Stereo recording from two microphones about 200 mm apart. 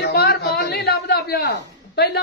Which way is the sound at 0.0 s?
50° left (ahead or behind).